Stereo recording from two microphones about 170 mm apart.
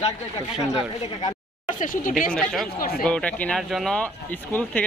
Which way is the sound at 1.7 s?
50° left (ahead or behind).